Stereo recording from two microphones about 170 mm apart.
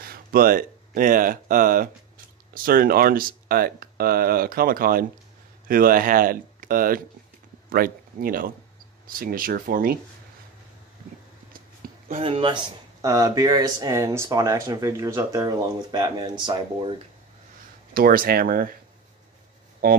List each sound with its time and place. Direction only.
0.0 s speech: 60° right (ahead or behind)
11.8 s a sound: 60° right (ahead or behind)
12.2 s speech: 35° right (ahead or behind)
17.9 s speech: 60° right (ahead or behind)